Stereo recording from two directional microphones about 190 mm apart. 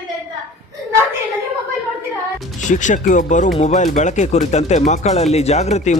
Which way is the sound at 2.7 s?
40° left (ahead or behind).